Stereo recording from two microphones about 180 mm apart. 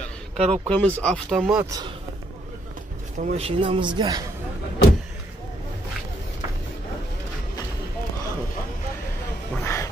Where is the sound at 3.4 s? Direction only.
30° right (ahead or behind).